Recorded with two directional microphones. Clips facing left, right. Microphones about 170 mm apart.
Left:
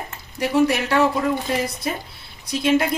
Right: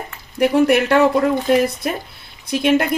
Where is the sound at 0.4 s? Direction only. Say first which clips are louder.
Right 5 dB; 60° right (ahead or behind).